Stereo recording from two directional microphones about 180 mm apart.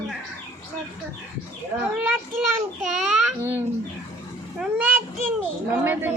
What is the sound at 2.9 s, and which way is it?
Babbling, centre (ahead or behind).